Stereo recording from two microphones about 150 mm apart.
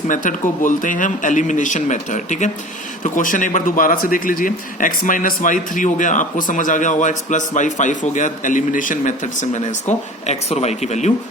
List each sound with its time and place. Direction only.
0.1 s a man's voice: 60° left (ahead or behind)